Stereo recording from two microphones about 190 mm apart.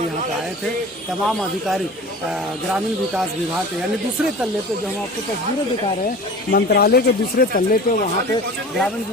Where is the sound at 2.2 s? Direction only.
5° right (ahead or behind).